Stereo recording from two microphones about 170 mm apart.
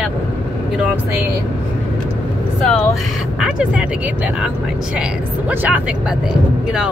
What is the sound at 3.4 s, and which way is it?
Speech, 5° right (ahead or behind).